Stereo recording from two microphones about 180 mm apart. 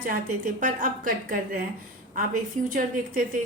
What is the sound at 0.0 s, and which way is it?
A woman's voice, 50° right (ahead or behind).